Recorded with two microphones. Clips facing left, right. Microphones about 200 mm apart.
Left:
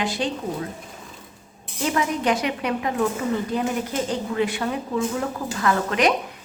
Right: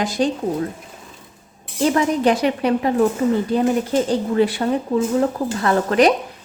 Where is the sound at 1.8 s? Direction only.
35° right (ahead or behind).